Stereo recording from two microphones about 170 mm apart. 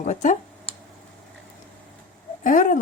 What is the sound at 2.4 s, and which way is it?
Speech, 50° left (ahead or behind).